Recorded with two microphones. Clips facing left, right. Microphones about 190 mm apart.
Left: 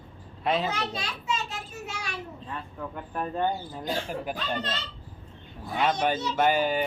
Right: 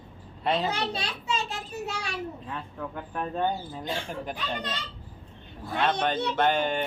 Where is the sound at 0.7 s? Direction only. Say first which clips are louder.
Right 2 dB; 30° right (ahead or behind).